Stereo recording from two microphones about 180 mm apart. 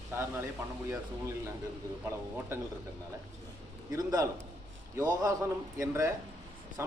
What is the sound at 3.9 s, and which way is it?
A man's voice, 20° right (ahead or behind).